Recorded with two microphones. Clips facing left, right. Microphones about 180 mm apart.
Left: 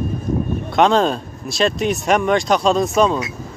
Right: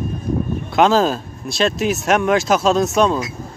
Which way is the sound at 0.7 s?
Centre (ahead or behind).